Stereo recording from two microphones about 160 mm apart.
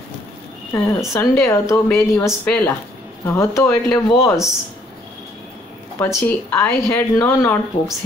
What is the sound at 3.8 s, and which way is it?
Speech, 5° left (ahead or behind).